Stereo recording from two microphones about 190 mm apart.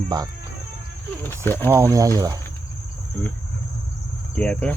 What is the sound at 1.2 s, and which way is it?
Speech, 10° left (ahead or behind).